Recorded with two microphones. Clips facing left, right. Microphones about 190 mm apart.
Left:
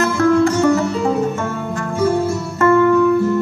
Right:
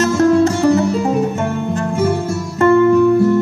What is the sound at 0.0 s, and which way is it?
Music, 20° right (ahead or behind).